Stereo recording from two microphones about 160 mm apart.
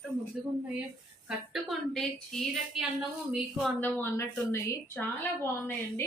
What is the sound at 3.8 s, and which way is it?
A woman's voice, 10° left (ahead or behind).